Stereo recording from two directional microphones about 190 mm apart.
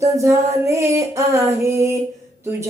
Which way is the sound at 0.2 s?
15° right (ahead or behind).